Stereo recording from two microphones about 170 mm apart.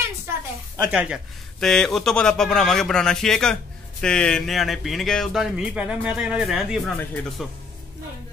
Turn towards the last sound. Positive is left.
turn(degrees=5)  # may be behind; listen again after turning